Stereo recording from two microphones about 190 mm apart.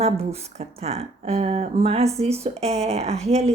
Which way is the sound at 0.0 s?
35° right (ahead or behind).